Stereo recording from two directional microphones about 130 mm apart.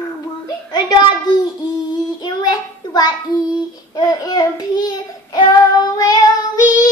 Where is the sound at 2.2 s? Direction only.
35° left (ahead or behind).